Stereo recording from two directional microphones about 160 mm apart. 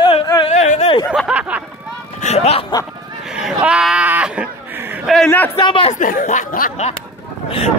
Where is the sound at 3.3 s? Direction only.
5° right (ahead or behind).